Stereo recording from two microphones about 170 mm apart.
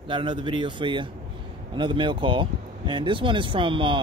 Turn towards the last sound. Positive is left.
turn(degrees=-30)  # may be behind; listen again after turning